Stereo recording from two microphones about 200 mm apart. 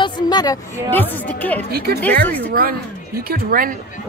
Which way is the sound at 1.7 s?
50° right (ahead or behind).